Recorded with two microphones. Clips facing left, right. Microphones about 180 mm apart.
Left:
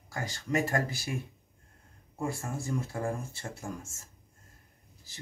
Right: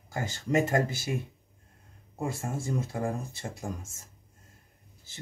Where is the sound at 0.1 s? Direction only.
25° right (ahead or behind).